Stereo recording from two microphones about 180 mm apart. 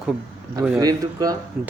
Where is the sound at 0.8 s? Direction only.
20° right (ahead or behind).